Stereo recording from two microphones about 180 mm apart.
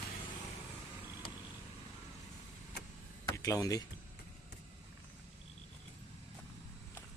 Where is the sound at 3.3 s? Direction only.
20° left (ahead or behind).